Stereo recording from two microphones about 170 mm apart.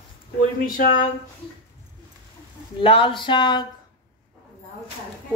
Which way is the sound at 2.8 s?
30° left (ahead or behind).